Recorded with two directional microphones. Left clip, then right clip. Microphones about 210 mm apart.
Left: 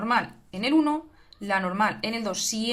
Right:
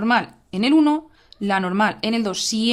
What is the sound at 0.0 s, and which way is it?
Speech, 50° right (ahead or behind).